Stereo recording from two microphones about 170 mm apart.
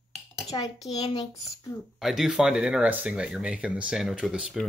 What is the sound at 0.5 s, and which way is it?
Speech, 25° left (ahead or behind).